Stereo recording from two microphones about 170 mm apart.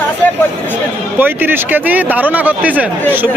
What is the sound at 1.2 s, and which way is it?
Speech, 10° right (ahead or behind).